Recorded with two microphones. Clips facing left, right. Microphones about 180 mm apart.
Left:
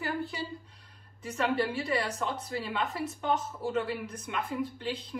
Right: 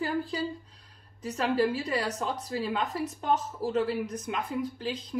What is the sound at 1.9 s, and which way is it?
Speech, 40° right (ahead or behind).